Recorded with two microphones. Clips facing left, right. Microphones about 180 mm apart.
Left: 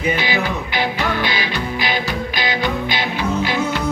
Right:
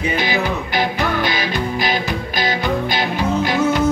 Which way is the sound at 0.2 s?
45° right (ahead or behind).